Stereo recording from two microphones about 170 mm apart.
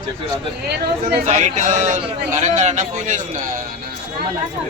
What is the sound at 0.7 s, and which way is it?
Speech, 70° right (ahead or behind).